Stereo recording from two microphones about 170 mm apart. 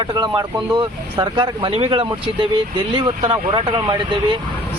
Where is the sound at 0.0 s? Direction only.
25° right (ahead or behind).